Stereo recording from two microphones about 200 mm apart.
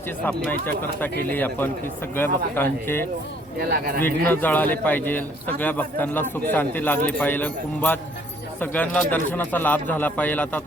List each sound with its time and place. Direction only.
0.3 s a man's voice: 10° left (ahead or behind)
3.6 s speech: 45° right (ahead or behind)
4.3 s a man's voice: 10° left (ahead or behind)